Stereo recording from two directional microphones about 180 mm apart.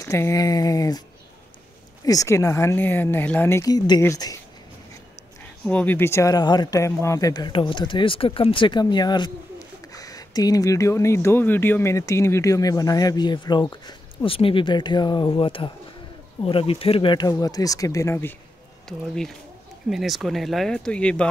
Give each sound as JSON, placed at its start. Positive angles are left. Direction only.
{"t": 0.0, "sound": "speech", "side_deg": 15}
{"t": 2.0, "sound": "speech", "side_deg": 20}
{"t": 5.7, "sound": "speech", "side_deg": 10}
{"t": 18.9, "sound": "speech", "side_deg": 0}